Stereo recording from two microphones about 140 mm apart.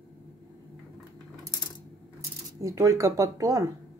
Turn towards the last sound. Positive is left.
turn(degrees=-25)  # may be behind; listen again after turning